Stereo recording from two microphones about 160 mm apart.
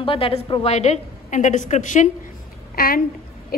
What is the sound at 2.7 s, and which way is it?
Speech, 65° left (ahead or behind).